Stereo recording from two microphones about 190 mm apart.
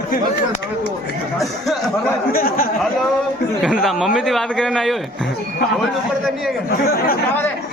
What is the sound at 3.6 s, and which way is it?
A man's voice, centre (ahead or behind).